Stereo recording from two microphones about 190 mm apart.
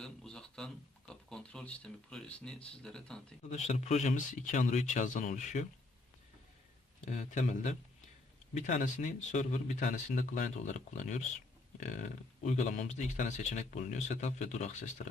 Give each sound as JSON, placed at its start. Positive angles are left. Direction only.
{"t": 0.0, "sound": "speech", "side_deg": 5}
{"t": 3.5, "sound": "speech", "side_deg": 35}
{"t": 7.0, "sound": "speech", "side_deg": 40}